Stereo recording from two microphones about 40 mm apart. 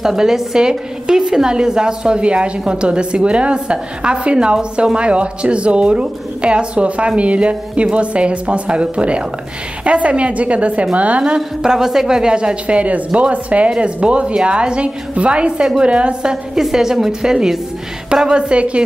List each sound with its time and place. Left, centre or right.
0.0 s a woman's voice: centre; by 11.2 s right
11.2 s speech: centre
16.7 s a woman's voice: centre; by 18.9 s right